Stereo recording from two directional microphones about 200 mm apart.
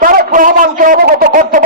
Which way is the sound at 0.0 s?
45° right (ahead or behind).